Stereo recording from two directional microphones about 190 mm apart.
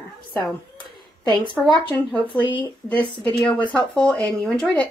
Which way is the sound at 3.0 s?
25° left (ahead or behind).